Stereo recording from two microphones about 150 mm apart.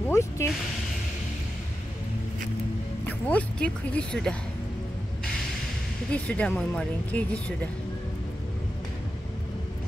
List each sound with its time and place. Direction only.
0.1 s speech: 20° left (ahead or behind)
3.1 s speech: 10° left (ahead or behind)
6.1 s speech: 5° left (ahead or behind)